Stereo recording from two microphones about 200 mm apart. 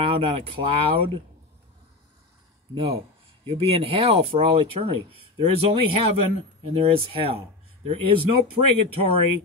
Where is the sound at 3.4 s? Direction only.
30° right (ahead or behind).